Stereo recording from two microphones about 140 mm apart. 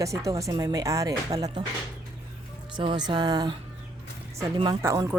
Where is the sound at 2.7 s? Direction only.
35° right (ahead or behind).